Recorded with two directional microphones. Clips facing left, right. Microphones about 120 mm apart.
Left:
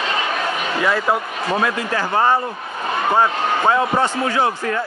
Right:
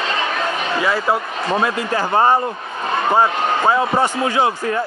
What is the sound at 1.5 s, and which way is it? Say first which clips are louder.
Speech: right 1 dB; 25° right (ahead or behind).